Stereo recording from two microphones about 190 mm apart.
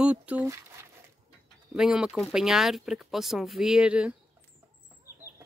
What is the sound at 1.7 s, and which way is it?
Speech, 5° right (ahead or behind).